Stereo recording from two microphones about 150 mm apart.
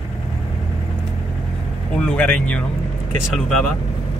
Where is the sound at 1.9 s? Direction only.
5° left (ahead or behind).